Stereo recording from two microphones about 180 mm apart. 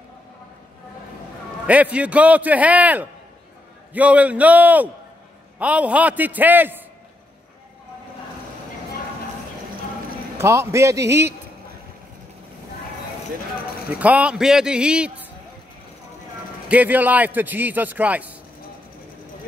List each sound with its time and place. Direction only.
1.7 s a man's voice: 10° right (ahead or behind)
10.3 s a man's voice: 15° right (ahead or behind)
13.8 s a man's voice: 10° right (ahead or behind)
16.6 s a man's voice: 10° right (ahead or behind)